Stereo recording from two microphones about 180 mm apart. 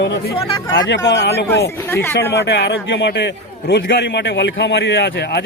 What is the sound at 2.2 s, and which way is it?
A man's voice, 70° left (ahead or behind).